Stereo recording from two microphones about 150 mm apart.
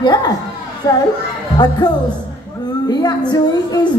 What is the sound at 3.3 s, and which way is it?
Speech, 30° left (ahead or behind).